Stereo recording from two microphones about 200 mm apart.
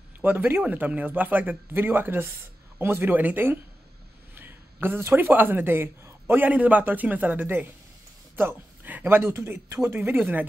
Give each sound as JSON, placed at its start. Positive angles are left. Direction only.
{"t": 0.2, "sound": "speech", "side_deg": -10}